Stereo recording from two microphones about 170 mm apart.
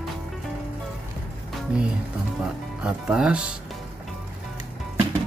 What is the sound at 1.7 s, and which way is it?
Speech, 5° right (ahead or behind).